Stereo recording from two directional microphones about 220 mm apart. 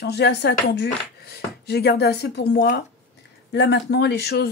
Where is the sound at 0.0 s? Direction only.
50° left (ahead or behind).